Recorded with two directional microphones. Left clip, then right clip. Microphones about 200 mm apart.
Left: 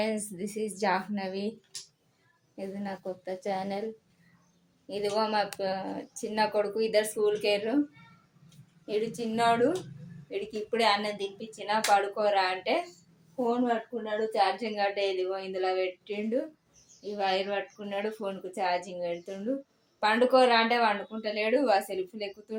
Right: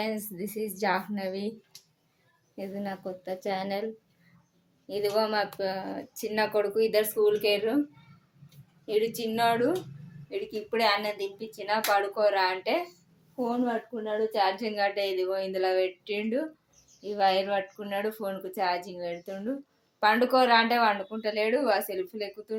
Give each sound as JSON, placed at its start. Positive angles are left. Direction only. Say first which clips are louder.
{"t": 0.0, "sound": "a woman's voice", "louder": "left 1 dB", "side_deg": 0}
{"t": 2.6, "sound": "speech", "louder": "right 2 dB", "side_deg": -15}
{"t": 4.9, "sound": "speech", "louder": "right 2 dB", "side_deg": -15}
{"t": 8.9, "sound": "speech", "louder": "right 4 dB", "side_deg": -10}
{"t": 14.0, "sound": "speech", "louder": "right 2 dB", "side_deg": -20}